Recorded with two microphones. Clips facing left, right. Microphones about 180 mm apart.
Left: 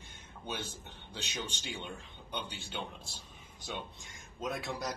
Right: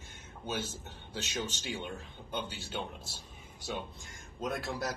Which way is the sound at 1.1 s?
Centre (ahead or behind).